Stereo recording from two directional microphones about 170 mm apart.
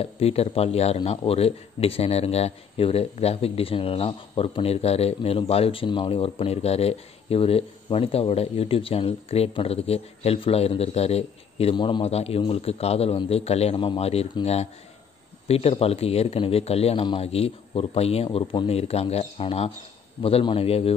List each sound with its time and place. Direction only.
0.0 s speech: 35° left (ahead or behind)